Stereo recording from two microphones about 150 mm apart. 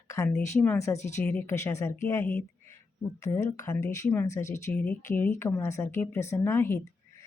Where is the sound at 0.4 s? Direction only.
15° left (ahead or behind).